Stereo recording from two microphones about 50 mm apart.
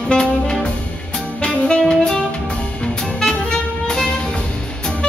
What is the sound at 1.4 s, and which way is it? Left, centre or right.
Saxophone, left.